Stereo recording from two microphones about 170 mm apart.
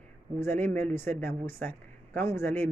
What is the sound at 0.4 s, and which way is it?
Speech, 10° left (ahead or behind).